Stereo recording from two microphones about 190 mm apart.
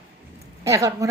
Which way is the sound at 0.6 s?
15° right (ahead or behind).